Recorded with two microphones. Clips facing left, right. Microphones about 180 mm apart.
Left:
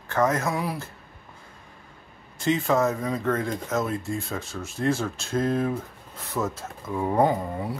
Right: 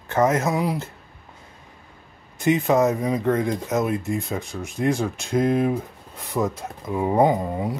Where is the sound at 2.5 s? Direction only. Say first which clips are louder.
Right 4 dB; 20° right (ahead or behind).